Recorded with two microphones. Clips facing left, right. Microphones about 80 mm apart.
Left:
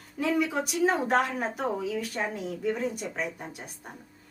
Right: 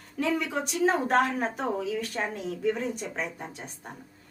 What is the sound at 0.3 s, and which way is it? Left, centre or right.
A woman's voice, centre.